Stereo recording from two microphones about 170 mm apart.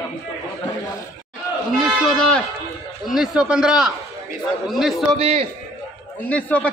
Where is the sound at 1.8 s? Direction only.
Centre (ahead or behind).